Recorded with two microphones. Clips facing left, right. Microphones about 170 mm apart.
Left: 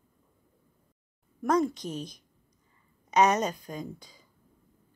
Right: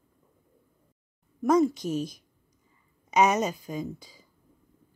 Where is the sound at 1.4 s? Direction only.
5° right (ahead or behind).